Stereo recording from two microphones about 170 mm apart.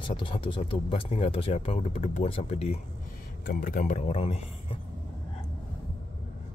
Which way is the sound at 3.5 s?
55° left (ahead or behind).